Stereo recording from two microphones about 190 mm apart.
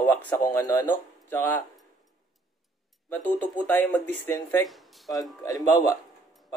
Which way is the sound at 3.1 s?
10° left (ahead or behind).